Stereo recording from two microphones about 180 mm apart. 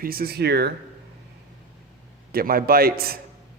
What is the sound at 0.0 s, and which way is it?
Speech, 55° right (ahead or behind).